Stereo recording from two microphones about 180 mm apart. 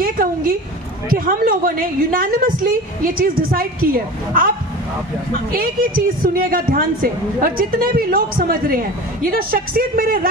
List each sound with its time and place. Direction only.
0.0 s a sound: 50° right (ahead or behind)
1.0 s a woman's voice: 55° right (ahead or behind)
5.5 s a woman's voice: 55° right (ahead or behind)